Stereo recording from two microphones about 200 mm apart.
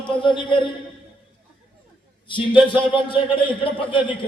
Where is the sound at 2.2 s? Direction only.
25° left (ahead or behind).